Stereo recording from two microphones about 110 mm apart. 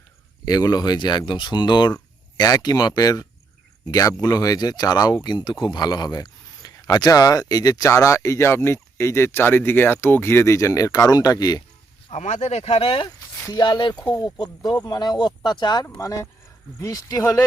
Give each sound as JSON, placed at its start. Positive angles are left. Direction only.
{"t": 0.4, "sound": "speech", "side_deg": 35}
{"t": 12.1, "sound": "speech", "side_deg": 90}
{"t": 13.5, "sound": "speech", "side_deg": 45}
{"t": 16.0, "sound": "speech", "side_deg": 30}